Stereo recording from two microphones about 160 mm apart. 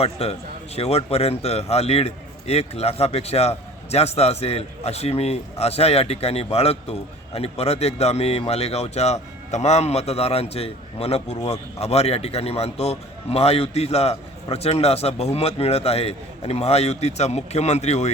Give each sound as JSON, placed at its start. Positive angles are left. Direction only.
{"t": 0.0, "sound": "a man's voice", "side_deg": 40}